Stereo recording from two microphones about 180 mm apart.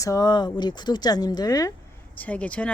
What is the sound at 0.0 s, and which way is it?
Speech, 20° left (ahead or behind).